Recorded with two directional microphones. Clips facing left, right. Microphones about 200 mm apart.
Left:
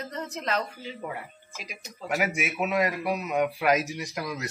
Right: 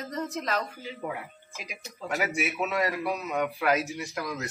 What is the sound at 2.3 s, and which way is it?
A man's voice, 15° left (ahead or behind).